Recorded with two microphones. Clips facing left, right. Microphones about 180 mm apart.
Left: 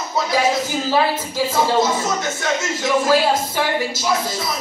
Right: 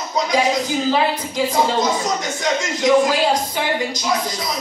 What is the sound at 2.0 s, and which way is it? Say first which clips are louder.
Speech: right 1 dB; 15° right (ahead or behind).